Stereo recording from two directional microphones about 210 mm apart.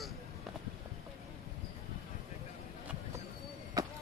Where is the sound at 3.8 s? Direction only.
20° right (ahead or behind).